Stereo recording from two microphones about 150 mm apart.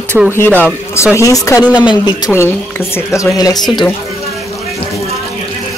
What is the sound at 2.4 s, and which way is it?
Speech, 15° left (ahead or behind).